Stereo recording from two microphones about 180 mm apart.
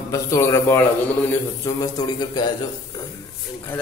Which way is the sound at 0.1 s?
15° left (ahead or behind).